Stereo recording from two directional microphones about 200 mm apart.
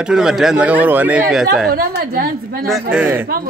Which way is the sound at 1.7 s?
50° right (ahead or behind).